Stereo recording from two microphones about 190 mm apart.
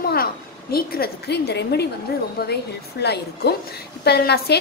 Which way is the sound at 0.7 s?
55° left (ahead or behind).